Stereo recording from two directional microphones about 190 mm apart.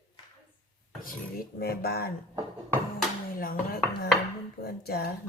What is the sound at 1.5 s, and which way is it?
Speech, 55° left (ahead or behind).